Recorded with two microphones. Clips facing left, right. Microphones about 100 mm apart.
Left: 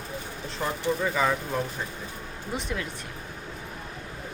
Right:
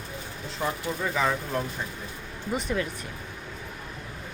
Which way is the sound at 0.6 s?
Centre (ahead or behind).